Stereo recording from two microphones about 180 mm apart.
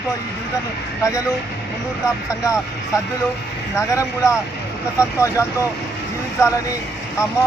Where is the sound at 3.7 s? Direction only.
15° left (ahead or behind).